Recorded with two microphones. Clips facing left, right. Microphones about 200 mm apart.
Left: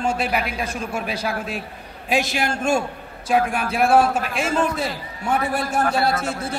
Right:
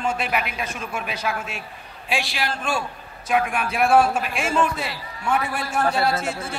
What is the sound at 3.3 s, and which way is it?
A man's voice, 35° left (ahead or behind).